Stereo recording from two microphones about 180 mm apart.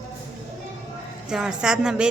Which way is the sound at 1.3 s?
5° right (ahead or behind).